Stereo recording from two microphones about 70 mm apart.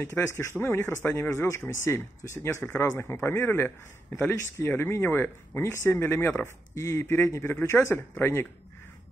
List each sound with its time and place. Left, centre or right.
0.0 s speech: left